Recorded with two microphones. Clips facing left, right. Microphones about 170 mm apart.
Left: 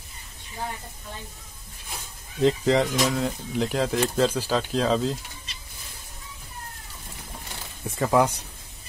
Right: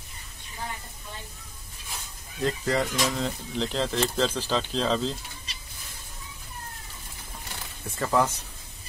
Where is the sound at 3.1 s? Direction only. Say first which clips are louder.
Left 3 dB; 10° left (ahead or behind).